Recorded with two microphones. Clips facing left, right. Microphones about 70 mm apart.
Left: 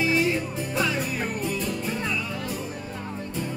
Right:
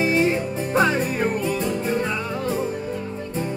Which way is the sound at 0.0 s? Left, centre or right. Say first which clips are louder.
Right 4 dB; right.